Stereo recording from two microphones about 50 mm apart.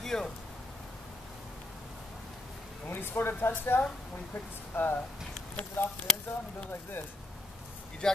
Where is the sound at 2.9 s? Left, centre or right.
Left.